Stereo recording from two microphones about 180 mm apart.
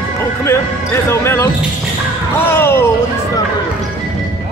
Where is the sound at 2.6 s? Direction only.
10° left (ahead or behind).